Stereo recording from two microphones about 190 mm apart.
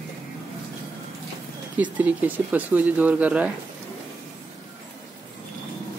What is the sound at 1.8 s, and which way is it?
Speech, 10° right (ahead or behind).